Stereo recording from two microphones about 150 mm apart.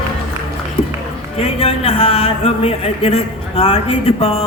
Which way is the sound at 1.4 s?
40° left (ahead or behind).